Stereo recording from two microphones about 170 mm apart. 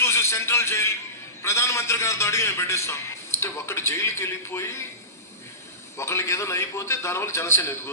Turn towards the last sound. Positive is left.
turn(degrees=15)  # may be behind; listen again after turning